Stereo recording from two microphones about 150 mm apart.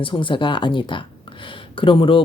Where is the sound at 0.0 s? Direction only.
35° left (ahead or behind).